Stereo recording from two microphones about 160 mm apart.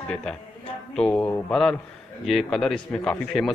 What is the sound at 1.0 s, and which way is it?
Speech, 10° left (ahead or behind).